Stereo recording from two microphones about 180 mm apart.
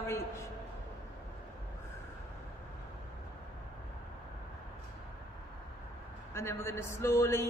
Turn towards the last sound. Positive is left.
turn(degrees=15)  # may be behind; listen again after turning